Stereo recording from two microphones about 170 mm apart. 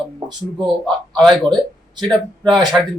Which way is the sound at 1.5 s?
25° right (ahead or behind).